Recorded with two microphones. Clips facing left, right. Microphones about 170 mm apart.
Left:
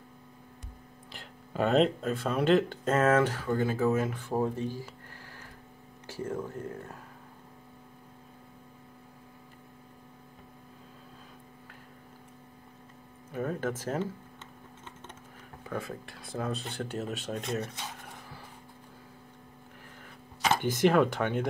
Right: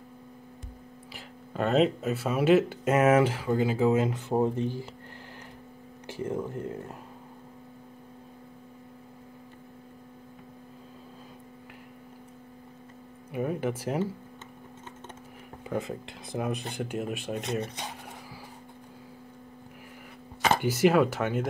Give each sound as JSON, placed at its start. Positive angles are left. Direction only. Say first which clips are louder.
{"t": 1.1, "sound": "speech", "louder": "even", "side_deg": 0}
{"t": 6.0, "sound": "speech", "louder": "right 3 dB", "side_deg": -15}
{"t": 13.3, "sound": "speech", "louder": "right 3 dB", "side_deg": -10}
{"t": 15.6, "sound": "speech", "louder": "right 4 dB", "side_deg": -20}
{"t": 20.6, "sound": "speech", "louder": "right 1 dB", "side_deg": -5}